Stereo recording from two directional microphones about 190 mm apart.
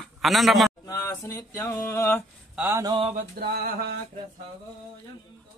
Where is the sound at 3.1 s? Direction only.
55° right (ahead or behind).